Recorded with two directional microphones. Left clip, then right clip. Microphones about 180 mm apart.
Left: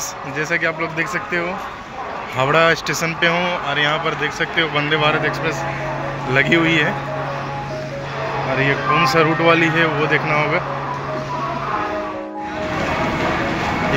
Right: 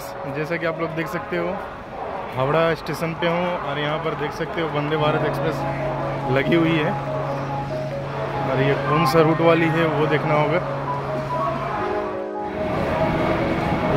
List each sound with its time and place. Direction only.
0.4 s speech: 10° right (ahead or behind)
8.5 s speech: 25° right (ahead or behind)
9.4 s speech: 10° right (ahead or behind)